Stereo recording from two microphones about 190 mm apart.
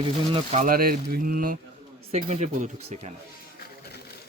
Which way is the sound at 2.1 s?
35° right (ahead or behind).